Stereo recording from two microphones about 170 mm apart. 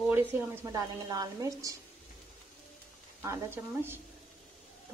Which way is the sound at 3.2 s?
15° right (ahead or behind).